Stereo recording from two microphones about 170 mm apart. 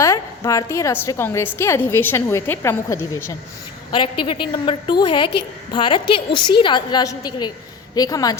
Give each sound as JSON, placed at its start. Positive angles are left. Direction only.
{"t": 0.0, "sound": "a woman's voice", "side_deg": 20}
{"t": 3.9, "sound": "a woman's voice", "side_deg": 30}